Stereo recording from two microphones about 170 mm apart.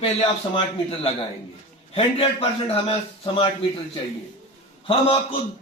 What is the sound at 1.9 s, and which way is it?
Speech, 35° left (ahead or behind).